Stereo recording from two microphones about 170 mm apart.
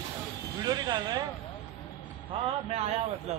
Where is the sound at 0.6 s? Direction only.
25° right (ahead or behind).